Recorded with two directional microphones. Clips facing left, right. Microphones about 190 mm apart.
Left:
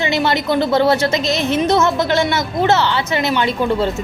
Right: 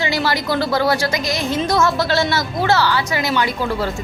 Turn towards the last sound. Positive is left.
turn(degrees=25)  # may be behind; listen again after turning